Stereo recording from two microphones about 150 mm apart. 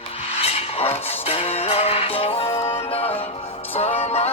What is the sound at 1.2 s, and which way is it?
Music, 40° left (ahead or behind).